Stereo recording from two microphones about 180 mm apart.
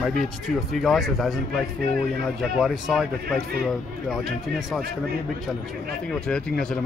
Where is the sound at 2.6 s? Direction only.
Centre (ahead or behind).